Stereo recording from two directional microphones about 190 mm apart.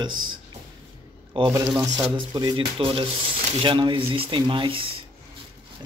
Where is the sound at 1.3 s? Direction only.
25° right (ahead or behind).